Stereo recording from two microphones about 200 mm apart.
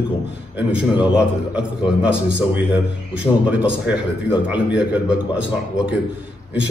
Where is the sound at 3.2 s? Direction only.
5° right (ahead or behind).